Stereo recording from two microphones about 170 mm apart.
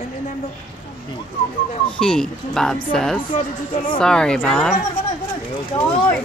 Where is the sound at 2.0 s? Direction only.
5° left (ahead or behind).